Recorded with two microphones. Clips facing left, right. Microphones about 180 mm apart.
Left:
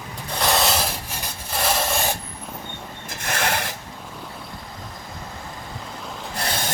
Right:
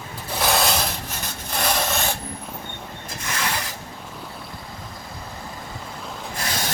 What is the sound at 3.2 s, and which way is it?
Rub, 60° left (ahead or behind).